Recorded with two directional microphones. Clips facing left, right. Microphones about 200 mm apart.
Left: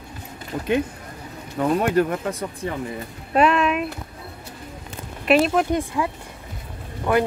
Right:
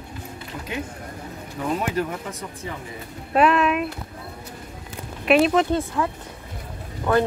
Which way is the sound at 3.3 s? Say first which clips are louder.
Even; centre (ahead or behind).